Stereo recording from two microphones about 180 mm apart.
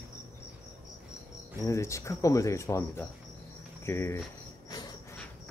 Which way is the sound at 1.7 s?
15° left (ahead or behind).